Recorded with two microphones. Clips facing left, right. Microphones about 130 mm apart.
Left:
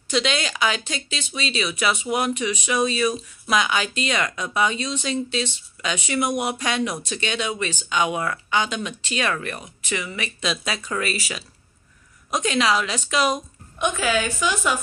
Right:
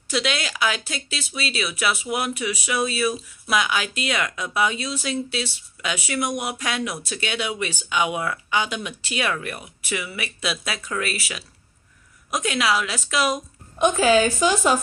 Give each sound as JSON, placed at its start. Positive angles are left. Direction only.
{"t": 0.1, "sound": "speech", "side_deg": -5}
{"t": 13.7, "sound": "a woman's voice", "side_deg": -35}